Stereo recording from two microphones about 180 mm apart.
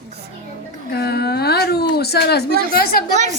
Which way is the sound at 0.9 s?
60° left (ahead or behind).